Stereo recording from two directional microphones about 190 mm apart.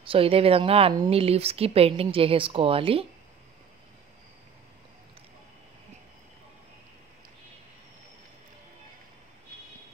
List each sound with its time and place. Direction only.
0.0 s speech: 30° right (ahead or behind)